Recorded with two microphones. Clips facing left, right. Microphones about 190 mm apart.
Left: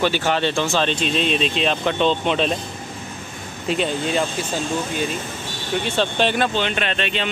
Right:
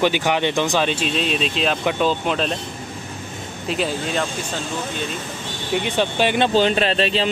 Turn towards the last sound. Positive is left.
turn(degrees=-35)  # may be behind; listen again after turning